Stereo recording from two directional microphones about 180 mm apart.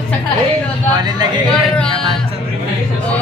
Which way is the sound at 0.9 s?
20° right (ahead or behind).